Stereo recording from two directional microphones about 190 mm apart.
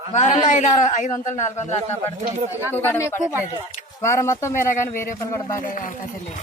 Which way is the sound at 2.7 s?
10° left (ahead or behind).